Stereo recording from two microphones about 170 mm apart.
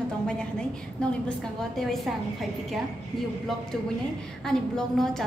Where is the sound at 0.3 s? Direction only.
5° left (ahead or behind).